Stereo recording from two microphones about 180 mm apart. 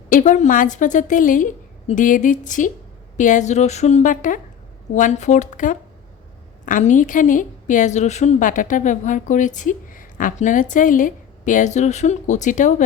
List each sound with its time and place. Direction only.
0.1 s a woman's voice: 45° left (ahead or behind)